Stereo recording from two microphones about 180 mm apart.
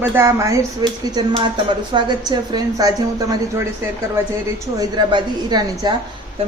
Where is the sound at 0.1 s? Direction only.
15° right (ahead or behind).